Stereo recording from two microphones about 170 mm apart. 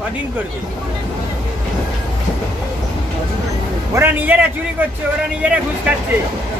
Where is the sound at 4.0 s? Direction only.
10° right (ahead or behind).